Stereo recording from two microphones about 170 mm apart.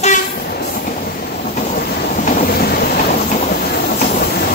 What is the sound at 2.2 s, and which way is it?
Train, 55° left (ahead or behind).